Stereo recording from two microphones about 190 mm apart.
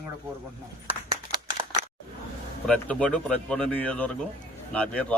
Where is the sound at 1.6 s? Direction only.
30° right (ahead or behind).